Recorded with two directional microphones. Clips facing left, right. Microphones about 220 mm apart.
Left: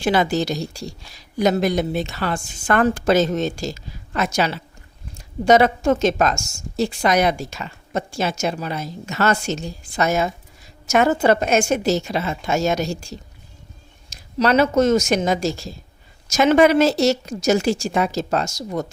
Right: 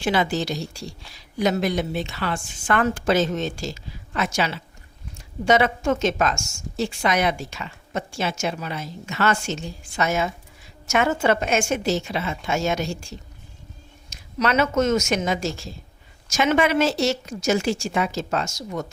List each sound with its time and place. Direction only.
0.0 s a woman's voice: 40° left (ahead or behind)